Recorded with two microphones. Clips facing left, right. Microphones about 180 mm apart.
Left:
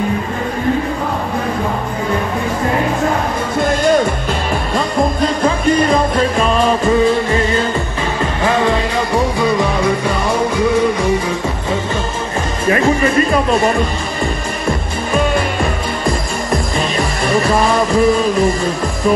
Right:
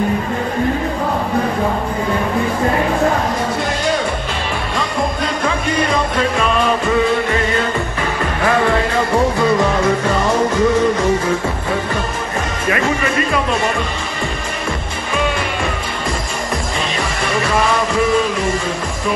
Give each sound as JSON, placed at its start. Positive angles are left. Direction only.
{"t": 3.5, "sound": "music", "side_deg": 50}
{"t": 4.7, "sound": "music", "side_deg": 40}
{"t": 12.6, "sound": "music", "side_deg": 35}
{"t": 17.3, "sound": "music", "side_deg": 35}